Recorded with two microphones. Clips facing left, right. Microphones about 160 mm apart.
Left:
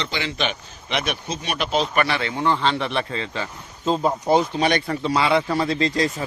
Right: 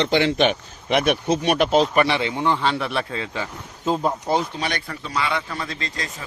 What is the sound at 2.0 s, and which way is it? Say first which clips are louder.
A man's voice: right 1 dB; 20° right (ahead or behind).